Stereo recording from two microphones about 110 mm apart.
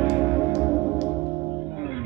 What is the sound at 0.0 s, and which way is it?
Music, 90° left.